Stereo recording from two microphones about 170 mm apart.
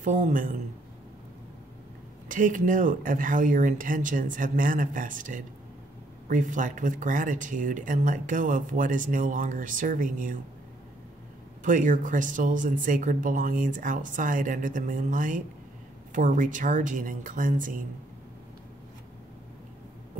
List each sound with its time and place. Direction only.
0.0 s speech: 50° right (ahead or behind)
2.2 s speech: 50° right (ahead or behind)
11.6 s speech: 50° right (ahead or behind)